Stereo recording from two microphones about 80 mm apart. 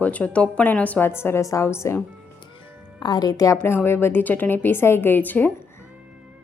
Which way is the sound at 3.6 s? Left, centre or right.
Left.